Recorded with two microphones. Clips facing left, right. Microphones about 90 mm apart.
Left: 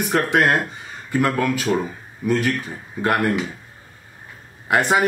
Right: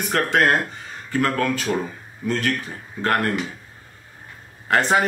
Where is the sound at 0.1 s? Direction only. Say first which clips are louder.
Even; 15° left (ahead or behind).